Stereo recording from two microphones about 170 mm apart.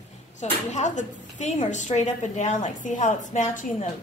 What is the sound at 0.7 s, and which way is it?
A woman's voice, 45° left (ahead or behind).